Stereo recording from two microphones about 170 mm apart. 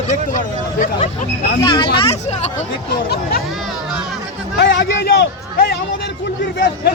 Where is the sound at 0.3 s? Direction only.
50° left (ahead or behind).